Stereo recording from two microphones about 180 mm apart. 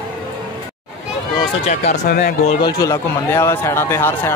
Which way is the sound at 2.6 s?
20° left (ahead or behind).